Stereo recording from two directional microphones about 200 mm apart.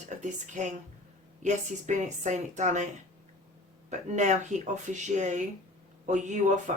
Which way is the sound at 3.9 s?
35° right (ahead or behind).